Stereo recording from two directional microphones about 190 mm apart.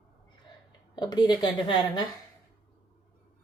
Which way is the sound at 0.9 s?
20° left (ahead or behind).